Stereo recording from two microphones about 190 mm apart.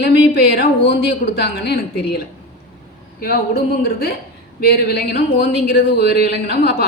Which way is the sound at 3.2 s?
55° left (ahead or behind).